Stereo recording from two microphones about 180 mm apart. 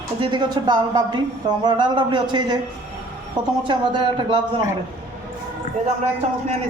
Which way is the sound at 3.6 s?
30° right (ahead or behind).